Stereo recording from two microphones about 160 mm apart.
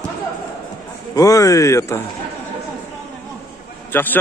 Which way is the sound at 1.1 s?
20° left (ahead or behind).